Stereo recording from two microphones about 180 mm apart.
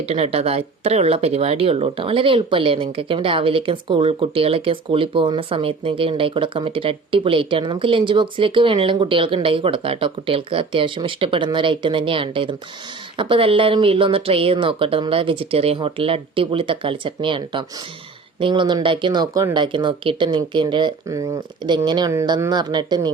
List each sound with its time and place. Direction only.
0.0 s speech: 35° right (ahead or behind)